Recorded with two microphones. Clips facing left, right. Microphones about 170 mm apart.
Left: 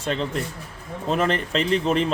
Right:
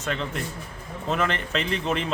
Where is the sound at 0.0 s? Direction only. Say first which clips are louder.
Left 4 dB; 30° left (ahead or behind).